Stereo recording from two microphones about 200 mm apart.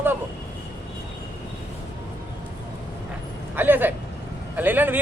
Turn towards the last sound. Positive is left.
turn(degrees=-10)  # may be behind; listen again after turning